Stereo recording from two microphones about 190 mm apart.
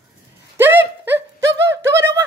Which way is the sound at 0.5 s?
10° right (ahead or behind).